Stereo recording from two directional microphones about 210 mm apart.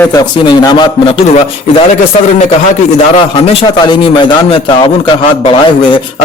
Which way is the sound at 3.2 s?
25° left (ahead or behind).